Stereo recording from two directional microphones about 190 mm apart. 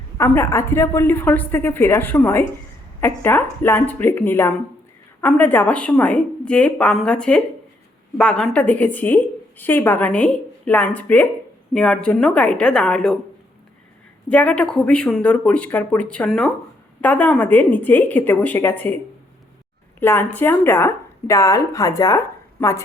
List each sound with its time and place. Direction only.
0.2 s a woman's voice: 15° left (ahead or behind)
14.3 s a woman's voice: 5° left (ahead or behind)
20.0 s a woman's voice: 10° left (ahead or behind)